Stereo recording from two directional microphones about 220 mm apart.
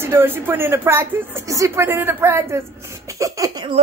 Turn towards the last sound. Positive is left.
turn(degrees=-15)  # may be behind; listen again after turning